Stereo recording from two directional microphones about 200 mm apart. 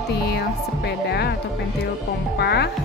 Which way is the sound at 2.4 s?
55° left (ahead or behind).